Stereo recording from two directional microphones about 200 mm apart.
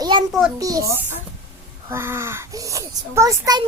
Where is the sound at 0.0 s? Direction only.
25° right (ahead or behind).